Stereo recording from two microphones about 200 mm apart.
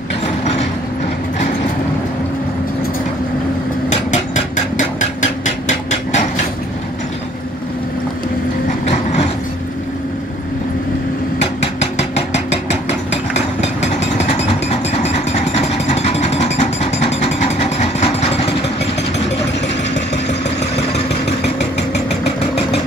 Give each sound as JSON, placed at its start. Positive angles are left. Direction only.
{"t": 4.7, "sound": "hammer", "side_deg": 35}
{"t": 8.8, "sound": "train", "side_deg": 30}
{"t": 13.1, "sound": "vehicle", "side_deg": 35}